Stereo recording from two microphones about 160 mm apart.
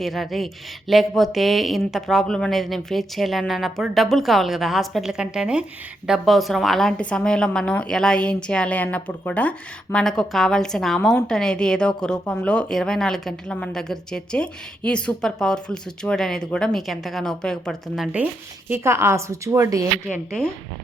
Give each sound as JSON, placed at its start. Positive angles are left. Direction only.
{"t": 0.0, "sound": "a woman's voice", "side_deg": 0}
{"t": 18.7, "sound": "a woman's voice", "side_deg": -15}